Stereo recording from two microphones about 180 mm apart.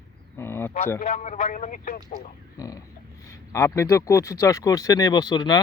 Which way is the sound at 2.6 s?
20° left (ahead or behind).